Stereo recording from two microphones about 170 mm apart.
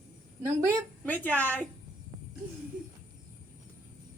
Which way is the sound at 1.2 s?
10° left (ahead or behind).